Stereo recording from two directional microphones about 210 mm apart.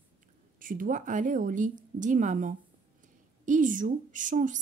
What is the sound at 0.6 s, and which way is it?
A woman's voice, 40° right (ahead or behind).